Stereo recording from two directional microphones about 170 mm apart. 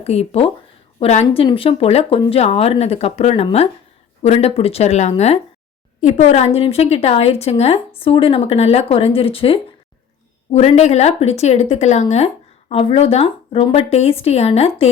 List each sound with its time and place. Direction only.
0.0 s a woman's voice: 35° left (ahead or behind)